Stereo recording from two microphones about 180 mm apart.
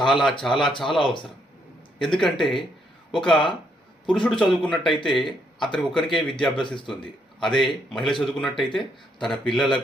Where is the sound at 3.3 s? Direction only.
25° left (ahead or behind).